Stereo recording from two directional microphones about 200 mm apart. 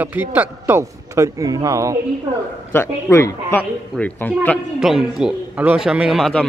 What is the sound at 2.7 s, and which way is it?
Speech, 10° left (ahead or behind).